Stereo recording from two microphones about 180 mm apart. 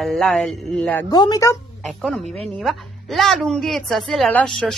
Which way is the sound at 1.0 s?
25° left (ahead or behind).